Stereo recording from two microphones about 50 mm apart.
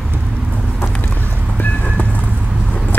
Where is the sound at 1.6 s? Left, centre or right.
Left.